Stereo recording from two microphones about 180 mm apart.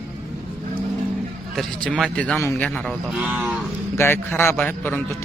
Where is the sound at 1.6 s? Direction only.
5° left (ahead or behind).